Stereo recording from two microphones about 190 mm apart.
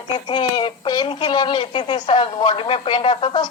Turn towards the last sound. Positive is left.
turn(degrees=30)  # may be behind; listen again after turning